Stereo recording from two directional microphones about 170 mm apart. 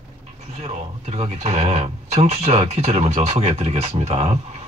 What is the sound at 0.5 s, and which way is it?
Speech, 40° right (ahead or behind).